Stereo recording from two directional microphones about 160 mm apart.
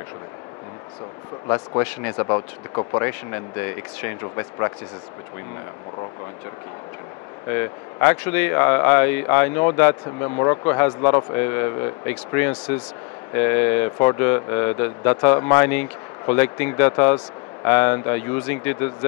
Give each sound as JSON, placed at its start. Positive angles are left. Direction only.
{"t": 1.5, "sound": "speech", "side_deg": 20}
{"t": 3.0, "sound": "speech", "side_deg": 15}
{"t": 7.4, "sound": "speech", "side_deg": 15}